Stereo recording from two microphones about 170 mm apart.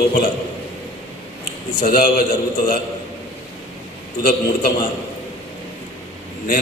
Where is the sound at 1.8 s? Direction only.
60° left (ahead or behind).